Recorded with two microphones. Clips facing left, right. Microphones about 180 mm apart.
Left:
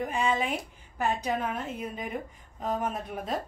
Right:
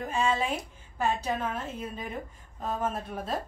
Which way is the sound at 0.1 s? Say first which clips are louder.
Right 4 dB; 15° left (ahead or behind).